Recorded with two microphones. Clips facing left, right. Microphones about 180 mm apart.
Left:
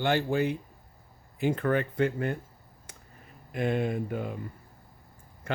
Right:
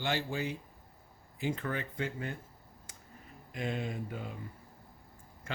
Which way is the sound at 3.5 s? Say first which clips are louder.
Left 8 dB; 60° left (ahead or behind).